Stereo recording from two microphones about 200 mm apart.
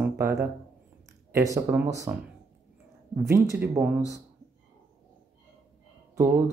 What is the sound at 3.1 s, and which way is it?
Speech, 10° right (ahead or behind).